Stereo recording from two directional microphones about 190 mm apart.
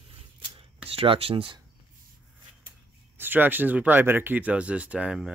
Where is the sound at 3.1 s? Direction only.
10° right (ahead or behind).